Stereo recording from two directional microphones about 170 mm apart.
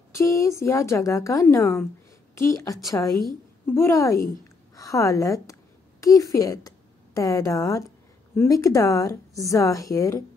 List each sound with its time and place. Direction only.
0.1 s a woman's voice: 20° left (ahead or behind)